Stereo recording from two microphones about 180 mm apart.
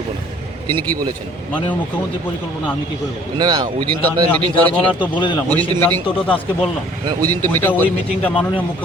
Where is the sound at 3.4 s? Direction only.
25° right (ahead or behind).